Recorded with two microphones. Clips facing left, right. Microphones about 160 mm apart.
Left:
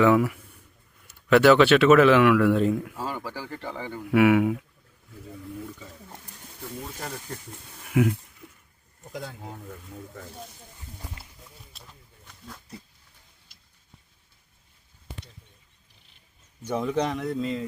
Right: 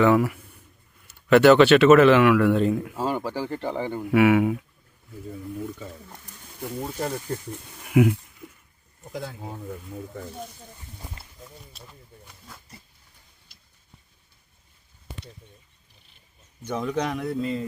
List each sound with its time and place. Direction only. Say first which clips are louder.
0.0 s speech: right 1 dB; centre (ahead or behind)
2.9 s speech: right 6 dB; 20° right (ahead or behind)
4.1 s speech: right 1 dB; centre (ahead or behind)
7.9 s speech: right 4 dB; 10° right (ahead or behind)
9.1 s speech: right 3 dB; centre (ahead or behind)
11.7 s a sound: right 4 dB; centre (ahead or behind)
12.2 s wild animals: left 6 dB; 10° right (ahead or behind)
16.6 s speech: left 1 dB; 5° left (ahead or behind)
17.4 s mantra: right 1 dB; 15° right (ahead or behind)